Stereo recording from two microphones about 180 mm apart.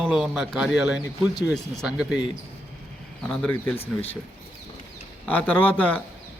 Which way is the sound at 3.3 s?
5° left (ahead or behind).